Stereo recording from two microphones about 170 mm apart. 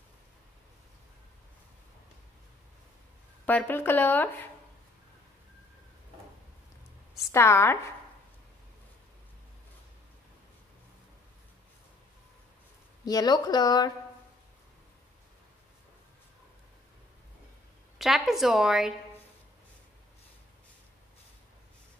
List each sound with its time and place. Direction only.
3.4 s speech: 10° left (ahead or behind)
7.3 s speech: 15° left (ahead or behind)
13.0 s speech: 20° left (ahead or behind)
17.9 s a woman's voice: centre (ahead or behind)